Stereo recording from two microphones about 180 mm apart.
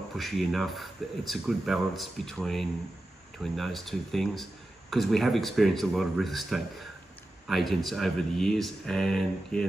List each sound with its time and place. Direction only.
0.1 s speech: centre (ahead or behind)